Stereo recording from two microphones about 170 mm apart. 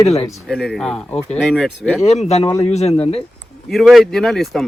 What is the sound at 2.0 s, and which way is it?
Speech, 40° left (ahead or behind).